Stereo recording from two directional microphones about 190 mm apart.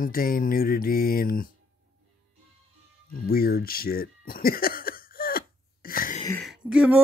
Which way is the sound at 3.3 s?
55° left (ahead or behind).